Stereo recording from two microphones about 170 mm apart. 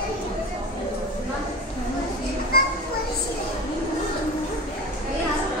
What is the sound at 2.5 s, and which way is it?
Children playing, 65° left (ahead or behind).